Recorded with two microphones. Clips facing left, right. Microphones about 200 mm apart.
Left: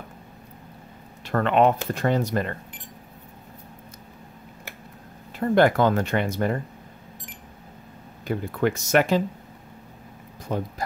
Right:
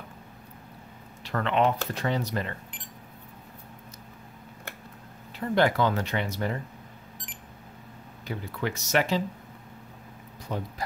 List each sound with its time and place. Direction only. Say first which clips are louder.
1.2 s speech: left 5 dB; 50° left (ahead or behind)
5.4 s speech: left 5 dB; 50° left (ahead or behind)
8.3 s speech: left 8 dB; 50° left (ahead or behind)
10.5 s speech: left 5 dB; 50° left (ahead or behind)